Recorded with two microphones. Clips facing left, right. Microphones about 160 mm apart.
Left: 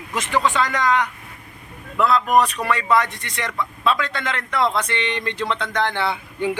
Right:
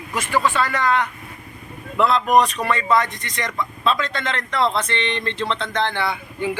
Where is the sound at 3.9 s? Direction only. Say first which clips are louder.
Even; 10° left (ahead or behind).